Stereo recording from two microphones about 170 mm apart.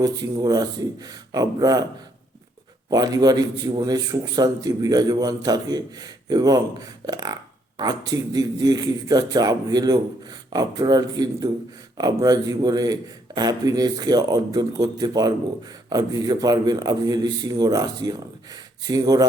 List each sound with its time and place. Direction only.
0.0 s a man's voice: 20° right (ahead or behind)
2.9 s a man's voice: 25° right (ahead or behind)